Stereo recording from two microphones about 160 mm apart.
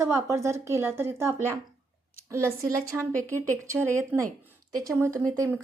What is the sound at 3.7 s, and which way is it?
A woman's voice, 15° right (ahead or behind).